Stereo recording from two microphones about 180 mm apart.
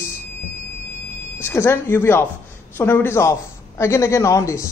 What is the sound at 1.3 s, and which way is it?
A man's voice, 15° left (ahead or behind).